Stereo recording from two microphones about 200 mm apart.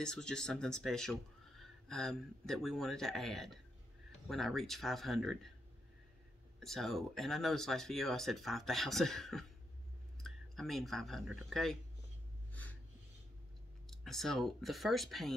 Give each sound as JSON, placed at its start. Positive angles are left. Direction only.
{"t": 0.0, "sound": "speech", "side_deg": 5}
{"t": 6.6, "sound": "speech", "side_deg": 0}
{"t": 13.8, "sound": "speech", "side_deg": 0}